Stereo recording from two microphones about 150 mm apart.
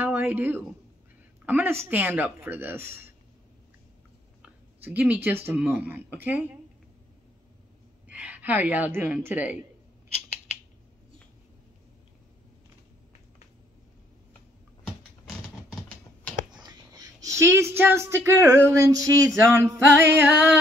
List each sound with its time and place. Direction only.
0.0 s speech: 15° right (ahead or behind)
1.4 s male singing: 10° right (ahead or behind)
4.4 s speech: 10° right (ahead or behind)
8.1 s a woman's voice: 10° right (ahead or behind)
16.5 s a sound: 25° right (ahead or behind)
18.7 s male singing: 20° right (ahead or behind)